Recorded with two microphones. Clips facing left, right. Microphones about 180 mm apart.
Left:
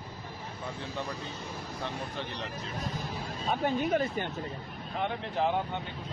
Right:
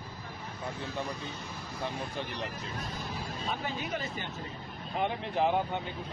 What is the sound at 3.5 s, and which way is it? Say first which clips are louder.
Speech: left 8 dB; 50° left (ahead or behind).